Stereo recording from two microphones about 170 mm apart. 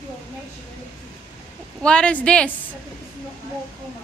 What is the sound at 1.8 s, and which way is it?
Speech, 5° left (ahead or behind).